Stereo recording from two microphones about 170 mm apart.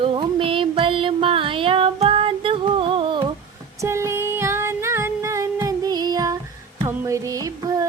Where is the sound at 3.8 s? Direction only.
15° right (ahead or behind).